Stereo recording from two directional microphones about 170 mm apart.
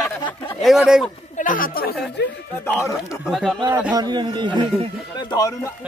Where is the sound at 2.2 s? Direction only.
80° left.